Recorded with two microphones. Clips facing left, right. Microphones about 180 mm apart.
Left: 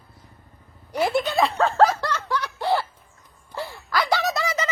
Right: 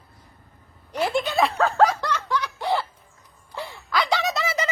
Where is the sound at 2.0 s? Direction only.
15° right (ahead or behind).